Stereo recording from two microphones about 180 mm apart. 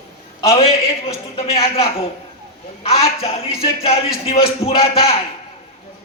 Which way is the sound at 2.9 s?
35° left (ahead or behind).